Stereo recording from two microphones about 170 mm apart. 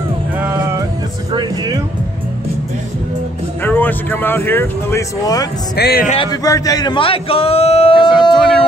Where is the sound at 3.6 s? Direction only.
10° left (ahead or behind).